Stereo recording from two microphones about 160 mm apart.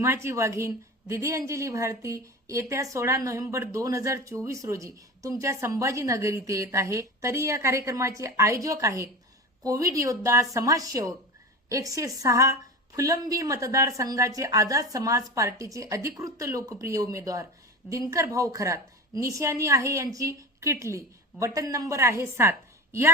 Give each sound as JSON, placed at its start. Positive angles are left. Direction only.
{"t": 0.0, "sound": "a woman's voice", "side_deg": -15}